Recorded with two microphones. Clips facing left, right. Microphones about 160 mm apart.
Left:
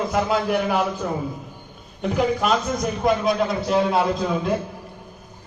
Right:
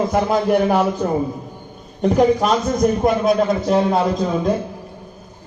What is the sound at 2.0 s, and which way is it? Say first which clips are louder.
A man's voice: right 6 dB; 40° right (ahead or behind).